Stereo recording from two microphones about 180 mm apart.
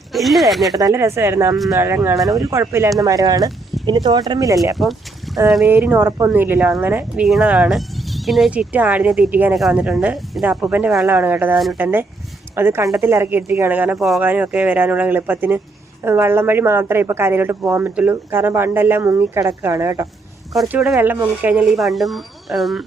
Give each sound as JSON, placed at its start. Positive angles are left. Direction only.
{"t": 0.1, "sound": "speech", "side_deg": 0}
{"t": 0.8, "sound": "a woman's voice", "side_deg": -20}
{"t": 4.8, "sound": "a sound", "side_deg": 0}
{"t": 5.6, "sound": "a woman's voice", "side_deg": -10}
{"t": 12.5, "sound": "a woman's voice", "side_deg": -15}
{"t": 20.5, "sound": "speech", "side_deg": 0}
{"t": 20.9, "sound": "speech", "side_deg": -15}